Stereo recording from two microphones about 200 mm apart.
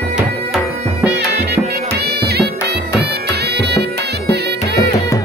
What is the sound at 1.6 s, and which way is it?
Music, 10° right (ahead or behind).